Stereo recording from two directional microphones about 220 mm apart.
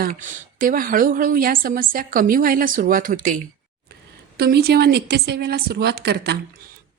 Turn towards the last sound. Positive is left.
turn(degrees=-45)  # may be behind; listen again after turning